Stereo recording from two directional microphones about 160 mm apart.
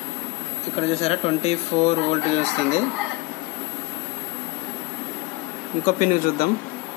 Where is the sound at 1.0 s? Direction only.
40° left (ahead or behind).